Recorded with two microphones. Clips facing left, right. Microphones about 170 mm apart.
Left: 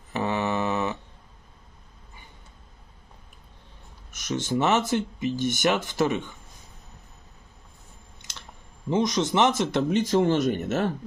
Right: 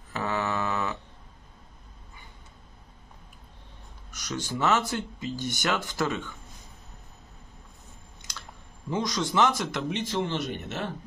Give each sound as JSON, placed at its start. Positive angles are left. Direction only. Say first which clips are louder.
{"t": 0.1, "sound": "mantra", "louder": "left 3 dB", "side_deg": 20}
{"t": 4.1, "sound": "speech", "louder": "left 6 dB", "side_deg": 20}
{"t": 8.9, "sound": "speech", "louder": "left 4 dB", "side_deg": 20}
{"t": 9.8, "sound": "speech", "louder": "left 9 dB", "side_deg": 40}